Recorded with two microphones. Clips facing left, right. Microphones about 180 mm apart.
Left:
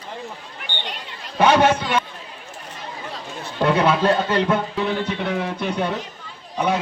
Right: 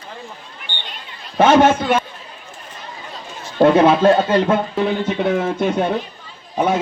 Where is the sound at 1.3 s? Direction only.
45° right (ahead or behind).